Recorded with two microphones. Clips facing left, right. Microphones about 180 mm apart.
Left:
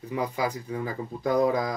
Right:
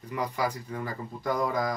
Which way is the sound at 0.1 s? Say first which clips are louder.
Left 2 dB; 10° left (ahead or behind).